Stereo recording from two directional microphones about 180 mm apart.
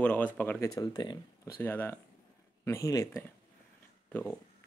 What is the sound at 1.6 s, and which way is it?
Speech, 10° left (ahead or behind).